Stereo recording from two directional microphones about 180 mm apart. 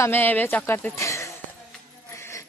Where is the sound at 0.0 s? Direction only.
10° left (ahead or behind).